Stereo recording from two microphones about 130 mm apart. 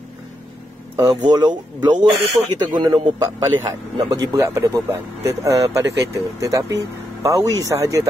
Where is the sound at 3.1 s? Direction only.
25° right (ahead or behind).